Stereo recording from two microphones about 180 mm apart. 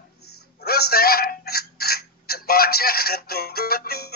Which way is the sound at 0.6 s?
60° left (ahead or behind).